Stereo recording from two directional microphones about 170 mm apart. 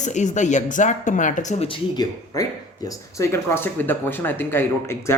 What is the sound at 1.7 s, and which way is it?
A man's voice, 25° left (ahead or behind).